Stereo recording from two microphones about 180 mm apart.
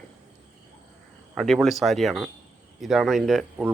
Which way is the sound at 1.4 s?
Centre (ahead or behind).